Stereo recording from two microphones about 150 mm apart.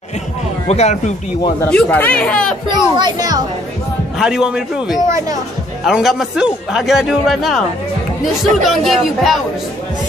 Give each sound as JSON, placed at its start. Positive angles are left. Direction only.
{"t": 0.7, "sound": "speech", "side_deg": 45}
{"t": 1.6, "sound": "speech", "side_deg": 10}
{"t": 2.7, "sound": "speech", "side_deg": -30}
{"t": 4.2, "sound": "a man's voice", "side_deg": -5}
{"t": 5.0, "sound": "speech", "side_deg": -20}
{"t": 5.9, "sound": "a man's voice", "side_deg": -5}
{"t": 8.6, "sound": "a man's voice", "side_deg": 0}